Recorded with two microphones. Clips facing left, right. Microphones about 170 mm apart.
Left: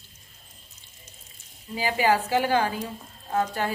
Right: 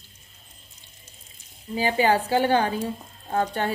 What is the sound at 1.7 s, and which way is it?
A woman's voice, 30° right (ahead or behind).